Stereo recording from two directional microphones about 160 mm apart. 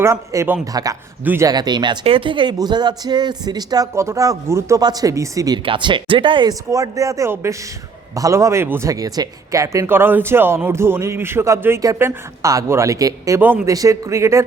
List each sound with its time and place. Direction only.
0.0 s speech: 20° right (ahead or behind)
5.6 s speech: 30° right (ahead or behind)